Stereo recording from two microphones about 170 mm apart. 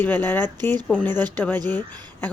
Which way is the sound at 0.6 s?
25° right (ahead or behind).